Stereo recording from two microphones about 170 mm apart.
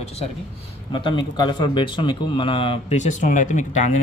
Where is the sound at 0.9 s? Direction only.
30° left (ahead or behind); by 4.0 s 45° left (ahead or behind).